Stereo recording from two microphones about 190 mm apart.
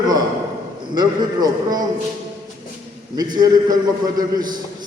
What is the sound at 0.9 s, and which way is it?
Speech, 20° right (ahead or behind).